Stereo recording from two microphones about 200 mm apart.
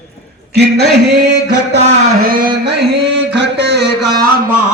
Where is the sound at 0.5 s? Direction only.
55° right (ahead or behind).